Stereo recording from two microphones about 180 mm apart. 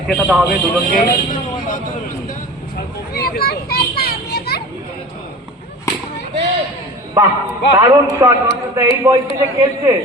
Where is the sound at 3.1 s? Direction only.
60° left (ahead or behind).